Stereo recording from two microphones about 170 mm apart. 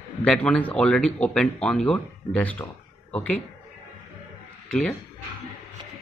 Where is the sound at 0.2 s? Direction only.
5° left (ahead or behind).